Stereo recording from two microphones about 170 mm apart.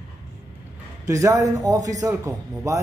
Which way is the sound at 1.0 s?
20° right (ahead or behind).